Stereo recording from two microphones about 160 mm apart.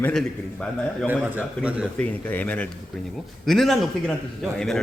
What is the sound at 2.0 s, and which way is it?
A man's voice, 10° left (ahead or behind).